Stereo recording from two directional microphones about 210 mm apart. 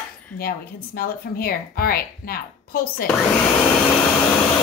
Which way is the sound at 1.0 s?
45° left (ahead or behind).